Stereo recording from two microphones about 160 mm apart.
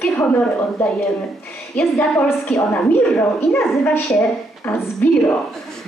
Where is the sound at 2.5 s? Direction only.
10° left (ahead or behind).